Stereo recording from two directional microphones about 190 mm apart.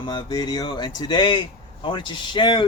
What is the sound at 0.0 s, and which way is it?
Speech, 20° left (ahead or behind).